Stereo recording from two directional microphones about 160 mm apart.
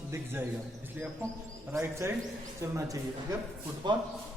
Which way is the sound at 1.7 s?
15° right (ahead or behind).